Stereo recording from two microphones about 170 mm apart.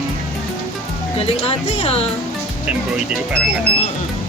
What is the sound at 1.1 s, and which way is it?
Speech, 35° left (ahead or behind).